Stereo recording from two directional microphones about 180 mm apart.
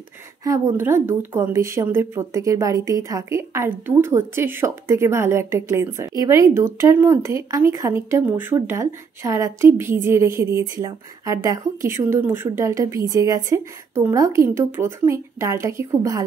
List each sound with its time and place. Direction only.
0.4 s a woman's voice: 20° right (ahead or behind)